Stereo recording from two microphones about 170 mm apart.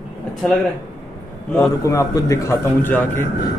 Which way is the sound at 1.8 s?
20° left (ahead or behind).